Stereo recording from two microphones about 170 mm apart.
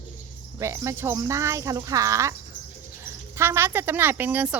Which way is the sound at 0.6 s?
15° right (ahead or behind).